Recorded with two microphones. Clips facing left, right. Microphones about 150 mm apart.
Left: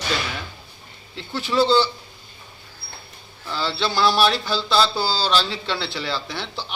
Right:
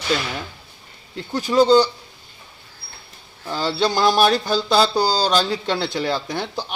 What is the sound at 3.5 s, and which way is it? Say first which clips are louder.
Speech: right 4 dB; 45° right (ahead or behind).